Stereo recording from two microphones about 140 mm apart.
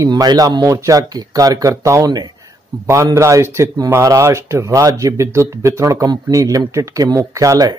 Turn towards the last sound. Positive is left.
turn(degrees=-25)  # may be behind; listen again after turning